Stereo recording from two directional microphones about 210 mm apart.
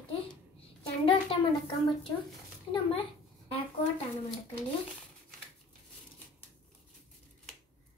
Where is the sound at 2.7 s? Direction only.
25° left (ahead or behind).